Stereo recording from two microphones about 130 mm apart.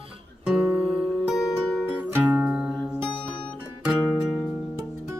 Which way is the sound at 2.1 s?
20° right (ahead or behind).